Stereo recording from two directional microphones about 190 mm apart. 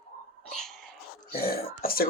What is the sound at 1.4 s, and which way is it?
Speech, 55° left (ahead or behind).